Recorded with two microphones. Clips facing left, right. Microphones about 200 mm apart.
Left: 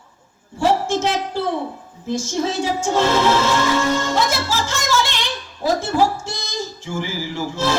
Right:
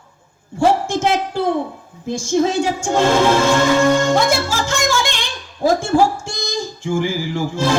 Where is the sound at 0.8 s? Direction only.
50° right (ahead or behind).